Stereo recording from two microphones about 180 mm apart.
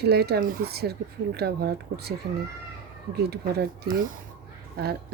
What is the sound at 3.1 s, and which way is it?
Speech, 60° right (ahead or behind).